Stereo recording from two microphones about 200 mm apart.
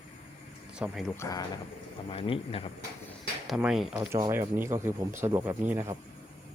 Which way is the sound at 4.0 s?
15° right (ahead or behind).